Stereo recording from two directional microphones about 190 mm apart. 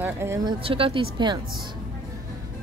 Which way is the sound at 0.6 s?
30° right (ahead or behind).